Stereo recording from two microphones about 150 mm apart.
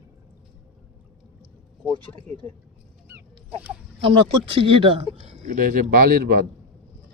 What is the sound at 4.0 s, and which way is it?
Speech, 40° right (ahead or behind).